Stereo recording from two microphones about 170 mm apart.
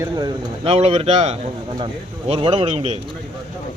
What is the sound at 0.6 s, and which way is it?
Speech, 35° right (ahead or behind).